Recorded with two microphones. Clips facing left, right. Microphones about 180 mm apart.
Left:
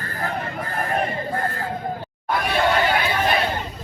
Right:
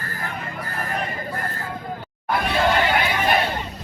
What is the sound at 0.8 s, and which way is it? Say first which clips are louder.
Music: left 5 dB; 30° left (ahead or behind).